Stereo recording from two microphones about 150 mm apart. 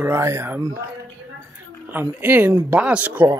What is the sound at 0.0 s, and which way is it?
Speech, 20° right (ahead or behind).